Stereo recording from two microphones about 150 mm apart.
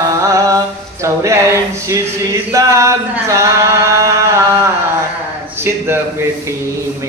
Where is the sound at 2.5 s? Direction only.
20° right (ahead or behind).